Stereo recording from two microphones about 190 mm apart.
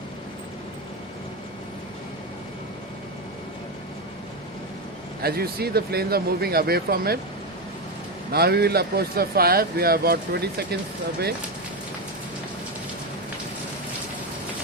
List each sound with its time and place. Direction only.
5.2 s speech: 55° right (ahead or behind)
8.3 s speech: 55° right (ahead or behind)